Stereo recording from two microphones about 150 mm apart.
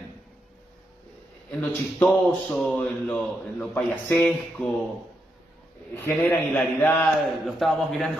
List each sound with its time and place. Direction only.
1.5 s a man's voice: 5° left (ahead or behind)
6.2 s a man's voice: 15° left (ahead or behind)
7.0 s a man's voice: centre (ahead or behind)